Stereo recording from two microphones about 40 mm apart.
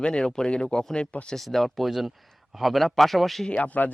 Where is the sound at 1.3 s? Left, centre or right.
Centre.